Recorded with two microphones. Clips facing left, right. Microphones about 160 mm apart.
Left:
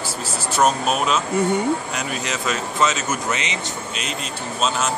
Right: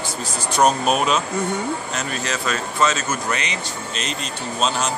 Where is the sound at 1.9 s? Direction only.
15° left (ahead or behind).